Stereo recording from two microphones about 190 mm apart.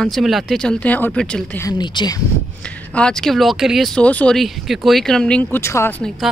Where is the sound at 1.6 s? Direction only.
25° left (ahead or behind).